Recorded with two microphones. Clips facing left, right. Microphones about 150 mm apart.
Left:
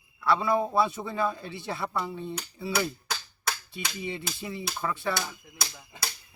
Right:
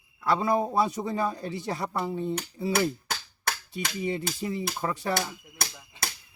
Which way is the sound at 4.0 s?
40° right (ahead or behind).